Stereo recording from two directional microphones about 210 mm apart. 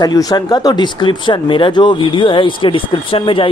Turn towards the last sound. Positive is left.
turn(degrees=25)  # may be behind; listen again after turning